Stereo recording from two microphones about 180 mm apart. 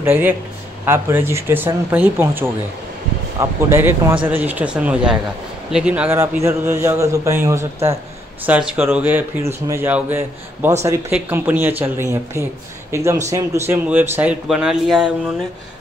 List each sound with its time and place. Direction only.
0.0 s a man's voice: 10° right (ahead or behind)